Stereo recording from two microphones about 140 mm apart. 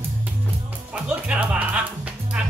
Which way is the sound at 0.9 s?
10° right (ahead or behind).